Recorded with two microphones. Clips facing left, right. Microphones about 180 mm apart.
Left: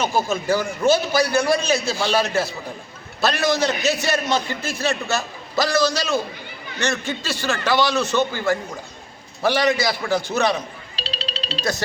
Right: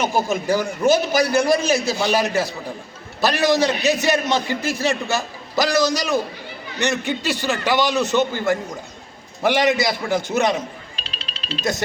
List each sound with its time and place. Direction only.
0.0 s a man's voice: 20° right (ahead or behind)
10.9 s music: 35° left (ahead or behind)